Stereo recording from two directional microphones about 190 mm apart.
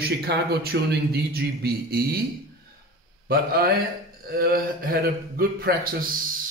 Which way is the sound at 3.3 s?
55° right (ahead or behind).